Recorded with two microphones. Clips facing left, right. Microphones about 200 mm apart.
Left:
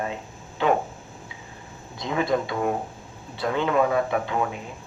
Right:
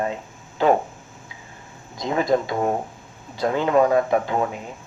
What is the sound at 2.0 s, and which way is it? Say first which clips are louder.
Speech: right 3 dB; 40° right (ahead or behind).